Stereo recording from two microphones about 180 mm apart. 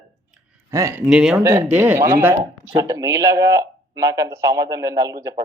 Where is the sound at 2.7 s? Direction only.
20° right (ahead or behind).